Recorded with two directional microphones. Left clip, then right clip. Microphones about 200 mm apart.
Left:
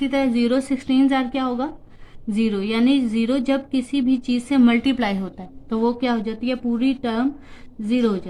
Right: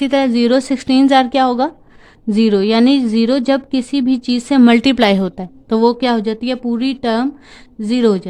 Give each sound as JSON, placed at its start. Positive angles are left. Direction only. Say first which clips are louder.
{"t": 0.0, "sound": "a woman's voice", "louder": "right 7 dB", "side_deg": -55}